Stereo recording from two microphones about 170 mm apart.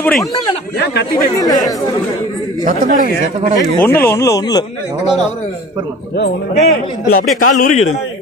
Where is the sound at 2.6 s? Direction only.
50° right (ahead or behind).